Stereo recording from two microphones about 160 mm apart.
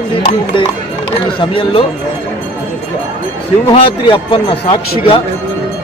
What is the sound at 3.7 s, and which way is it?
A man's voice, 30° left (ahead or behind).